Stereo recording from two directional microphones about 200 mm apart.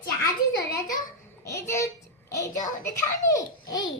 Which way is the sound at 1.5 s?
15° left (ahead or behind).